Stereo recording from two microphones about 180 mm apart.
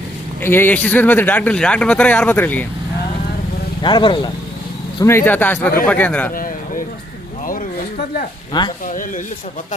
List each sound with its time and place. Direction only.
0.4 s speech: 10° left (ahead or behind)
3.8 s speech: 25° left (ahead or behind)
5.0 s speech: 10° left (ahead or behind)
6.3 s a sound: 50° left (ahead or behind)
8.5 s speech: 25° left (ahead or behind)
8.9 s speech: 45° left (ahead or behind)